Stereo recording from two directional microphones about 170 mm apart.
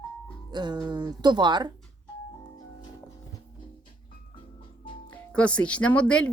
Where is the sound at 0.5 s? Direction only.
25° right (ahead or behind).